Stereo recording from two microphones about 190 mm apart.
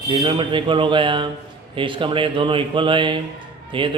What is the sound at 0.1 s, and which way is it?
Speech, 25° right (ahead or behind).